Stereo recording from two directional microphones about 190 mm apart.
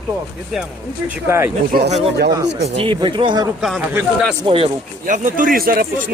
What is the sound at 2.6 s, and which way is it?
Speech, 35° right (ahead or behind).